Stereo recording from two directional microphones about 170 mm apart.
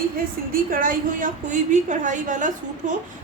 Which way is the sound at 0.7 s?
55° right (ahead or behind).